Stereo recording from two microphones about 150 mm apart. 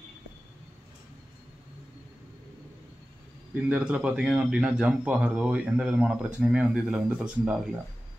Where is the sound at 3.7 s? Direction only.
10° right (ahead or behind).